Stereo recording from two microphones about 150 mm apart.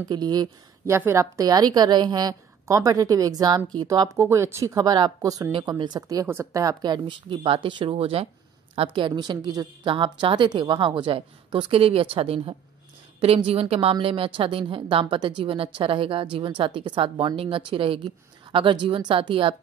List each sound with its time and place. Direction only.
0.1 s a woman's voice: 25° right (ahead or behind)